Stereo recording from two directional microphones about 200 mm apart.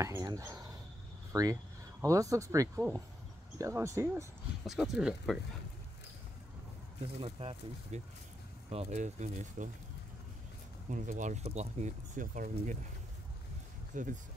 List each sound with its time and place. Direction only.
0.0 s speech: 20° right (ahead or behind)
4.6 s speech: centre (ahead or behind)
7.2 s speech: 25° right (ahead or behind)
10.9 s speech: 40° right (ahead or behind)
13.9 s speech: 40° right (ahead or behind)